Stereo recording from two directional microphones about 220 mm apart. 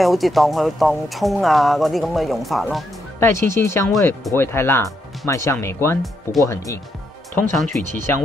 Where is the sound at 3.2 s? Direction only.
10° left (ahead or behind).